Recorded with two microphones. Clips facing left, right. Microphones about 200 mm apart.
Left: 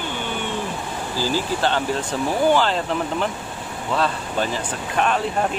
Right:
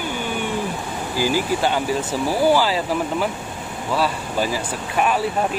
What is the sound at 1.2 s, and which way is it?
Speech, 15° right (ahead or behind).